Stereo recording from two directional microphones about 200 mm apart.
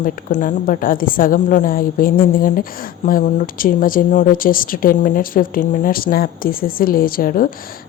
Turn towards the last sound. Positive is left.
turn(degrees=45)  # may be behind; listen again after turning